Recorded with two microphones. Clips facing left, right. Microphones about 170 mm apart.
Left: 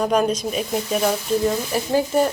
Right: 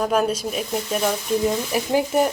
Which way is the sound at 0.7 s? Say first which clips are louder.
Left 2 dB; 5° left (ahead or behind).